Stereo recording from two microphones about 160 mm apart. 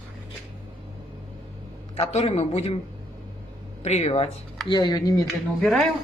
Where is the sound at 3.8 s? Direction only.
40° left (ahead or behind).